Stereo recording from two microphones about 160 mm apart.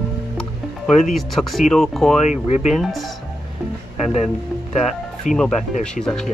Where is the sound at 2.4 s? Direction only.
45° left (ahead or behind).